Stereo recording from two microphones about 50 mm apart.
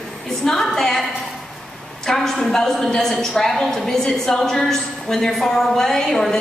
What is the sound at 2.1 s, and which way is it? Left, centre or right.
A woman's voice, centre.